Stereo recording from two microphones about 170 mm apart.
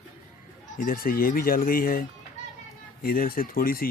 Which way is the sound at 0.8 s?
55° left (ahead or behind).